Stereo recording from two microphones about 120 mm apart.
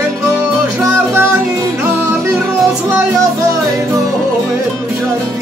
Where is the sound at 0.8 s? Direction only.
20° right (ahead or behind).